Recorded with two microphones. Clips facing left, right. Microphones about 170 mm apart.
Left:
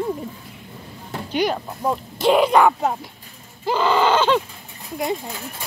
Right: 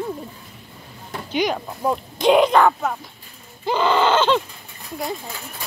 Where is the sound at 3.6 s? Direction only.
5° left (ahead or behind).